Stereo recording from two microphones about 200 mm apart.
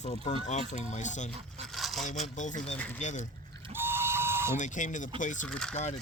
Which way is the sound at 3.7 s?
10° right (ahead or behind).